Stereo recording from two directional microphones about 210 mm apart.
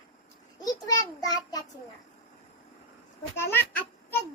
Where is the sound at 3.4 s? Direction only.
10° left (ahead or behind).